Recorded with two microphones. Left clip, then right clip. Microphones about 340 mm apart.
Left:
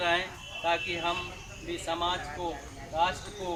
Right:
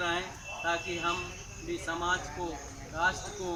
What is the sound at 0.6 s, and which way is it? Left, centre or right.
Speech, centre.